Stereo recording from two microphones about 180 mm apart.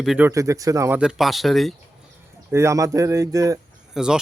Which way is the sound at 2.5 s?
15° right (ahead or behind).